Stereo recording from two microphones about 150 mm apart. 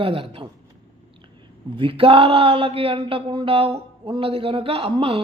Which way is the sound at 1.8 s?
35° right (ahead or behind).